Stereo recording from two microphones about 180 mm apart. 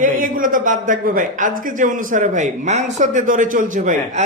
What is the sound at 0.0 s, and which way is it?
A man's voice, 50° right (ahead or behind).